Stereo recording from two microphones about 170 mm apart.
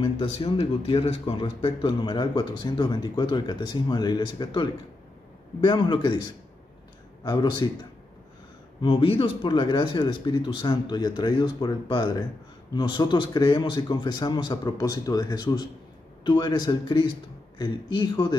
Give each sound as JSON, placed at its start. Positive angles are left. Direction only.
{"t": 0.0, "sound": "speech", "side_deg": 30}
{"t": 7.2, "sound": "speech", "side_deg": 25}
{"t": 8.8, "sound": "speech", "side_deg": 30}